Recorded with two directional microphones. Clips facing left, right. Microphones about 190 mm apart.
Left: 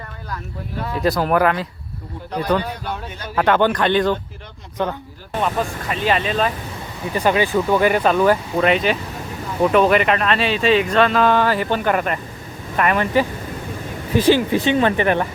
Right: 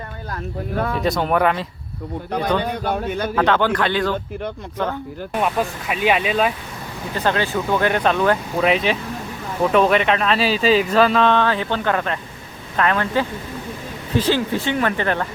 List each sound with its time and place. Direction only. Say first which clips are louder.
1.0 s speech: left 3 dB; centre (ahead or behind)
2.6 s a man's voice: right 6 dB; 55° right (ahead or behind)
3.3 s speech: left 3 dB; 10° left (ahead or behind)
5.3 s speech: even; 5° right (ahead or behind)
7.1 s speech: left 3 dB; 10° left (ahead or behind)